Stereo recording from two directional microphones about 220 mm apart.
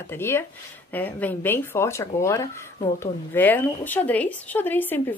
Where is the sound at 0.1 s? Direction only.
10° left (ahead or behind).